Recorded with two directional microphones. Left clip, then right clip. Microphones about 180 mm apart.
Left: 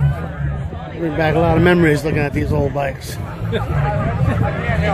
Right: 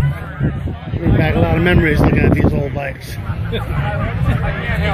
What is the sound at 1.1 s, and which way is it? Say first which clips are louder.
Speech: left 2 dB; 10° left (ahead or behind).